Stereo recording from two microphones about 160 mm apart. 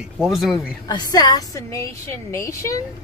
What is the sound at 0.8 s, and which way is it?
A woman's voice, 25° left (ahead or behind).